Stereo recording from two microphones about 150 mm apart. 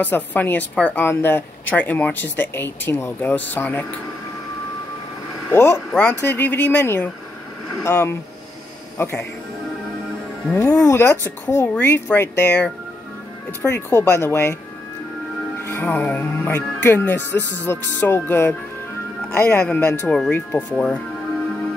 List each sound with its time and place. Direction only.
0.0 s speech: 10° left (ahead or behind)
5.5 s a man's voice: 15° left (ahead or behind)
10.5 s speech: 15° left (ahead or behind)
15.6 s speech: 15° left (ahead or behind)